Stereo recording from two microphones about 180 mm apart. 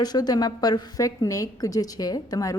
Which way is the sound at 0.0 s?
20° left (ahead or behind).